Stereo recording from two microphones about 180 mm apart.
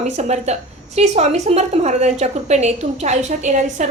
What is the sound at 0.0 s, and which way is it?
A woman's voice, 40° right (ahead or behind).